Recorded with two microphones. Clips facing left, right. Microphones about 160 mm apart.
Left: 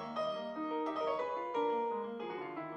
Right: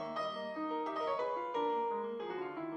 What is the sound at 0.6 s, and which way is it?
Music, centre (ahead or behind).